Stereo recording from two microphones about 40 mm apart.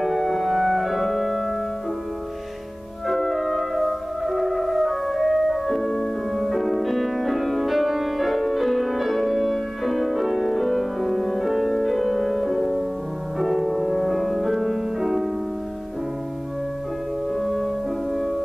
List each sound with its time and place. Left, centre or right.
0.0 s music: centre
3.1 s music: centre
17.3 s music: centre